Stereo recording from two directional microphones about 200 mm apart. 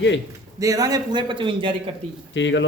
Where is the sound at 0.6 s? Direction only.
15° right (ahead or behind).